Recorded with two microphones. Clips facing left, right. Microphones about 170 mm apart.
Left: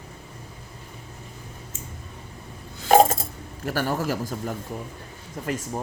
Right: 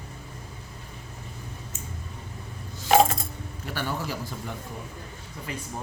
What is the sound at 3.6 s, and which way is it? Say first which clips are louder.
Speech: left 6 dB; 45° left (ahead or behind).